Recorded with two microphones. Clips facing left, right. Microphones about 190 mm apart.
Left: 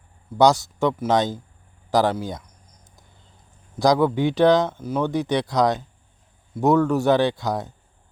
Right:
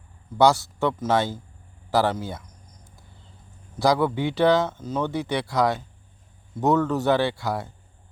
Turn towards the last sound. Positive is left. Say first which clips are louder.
# left 3 dB
turn(degrees=20)  # may be behind; listen again after turning